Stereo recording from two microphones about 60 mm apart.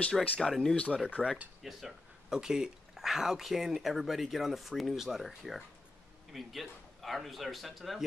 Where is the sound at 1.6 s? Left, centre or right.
Centre.